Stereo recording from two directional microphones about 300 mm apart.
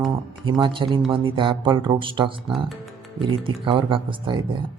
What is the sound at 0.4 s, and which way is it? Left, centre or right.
Speech, centre.